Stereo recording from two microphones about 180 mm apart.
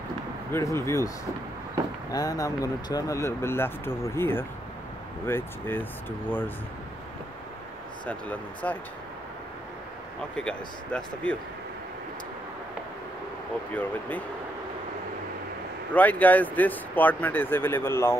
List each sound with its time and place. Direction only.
0.5 s speech: 15° left (ahead or behind)
2.1 s speech: 20° left (ahead or behind)
8.1 s speech: 10° left (ahead or behind)
10.3 s speech: 5° left (ahead or behind)
13.7 s speech: 10° left (ahead or behind)
15.9 s speech: 10° left (ahead or behind)